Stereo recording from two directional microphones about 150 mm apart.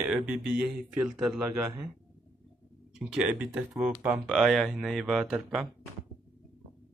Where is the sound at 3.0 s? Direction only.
10° right (ahead or behind).